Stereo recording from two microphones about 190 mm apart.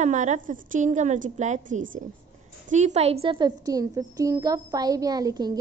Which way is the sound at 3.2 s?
25° right (ahead or behind).